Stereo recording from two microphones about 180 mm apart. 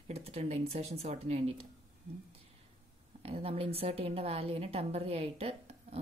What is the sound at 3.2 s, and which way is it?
A woman's voice, 30° right (ahead or behind).